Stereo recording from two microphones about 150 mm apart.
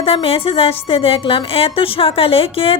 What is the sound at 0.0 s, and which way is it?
A woman's voice, 40° left (ahead or behind).